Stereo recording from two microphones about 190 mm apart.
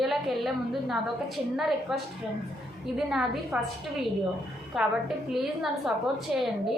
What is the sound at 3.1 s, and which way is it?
Speech, centre (ahead or behind).